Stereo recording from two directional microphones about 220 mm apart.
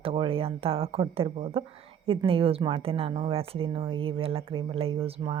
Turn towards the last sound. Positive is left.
turn(degrees=-25)  # may be behind; listen again after turning